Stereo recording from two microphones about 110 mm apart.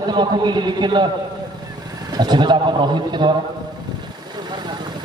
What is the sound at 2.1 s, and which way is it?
A man's voice, 40° right (ahead or behind).